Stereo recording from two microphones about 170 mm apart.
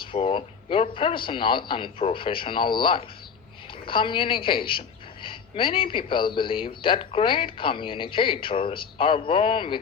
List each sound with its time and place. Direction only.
0.0 s a man's voice: 30° left (ahead or behind)